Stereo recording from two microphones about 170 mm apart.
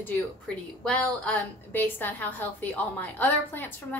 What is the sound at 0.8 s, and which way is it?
A woman's voice, 10° left (ahead or behind).